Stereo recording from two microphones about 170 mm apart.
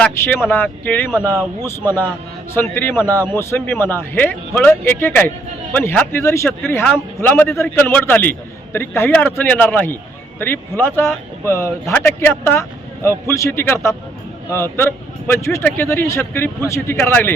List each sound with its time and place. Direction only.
0.0 s a man's voice: 10° left (ahead or behind)
1.2 s speech: 20° right (ahead or behind)
1.6 s a man's voice: 15° left (ahead or behind)